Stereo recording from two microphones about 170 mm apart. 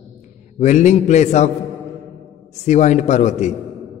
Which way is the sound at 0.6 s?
45° left (ahead or behind).